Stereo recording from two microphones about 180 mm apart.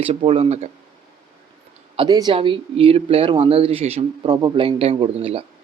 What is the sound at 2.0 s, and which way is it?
Speech, 25° right (ahead or behind).